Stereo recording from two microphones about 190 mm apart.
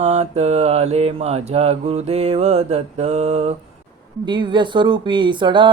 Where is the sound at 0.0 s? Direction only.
35° right (ahead or behind).